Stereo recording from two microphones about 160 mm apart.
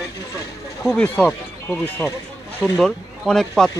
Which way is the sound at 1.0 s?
10° left (ahead or behind).